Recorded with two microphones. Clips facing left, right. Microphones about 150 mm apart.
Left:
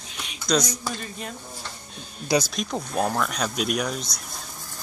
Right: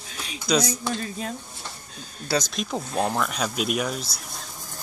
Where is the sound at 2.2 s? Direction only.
15° left (ahead or behind).